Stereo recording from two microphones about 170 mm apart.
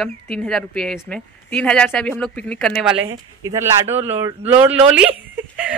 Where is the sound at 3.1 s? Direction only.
20° right (ahead or behind).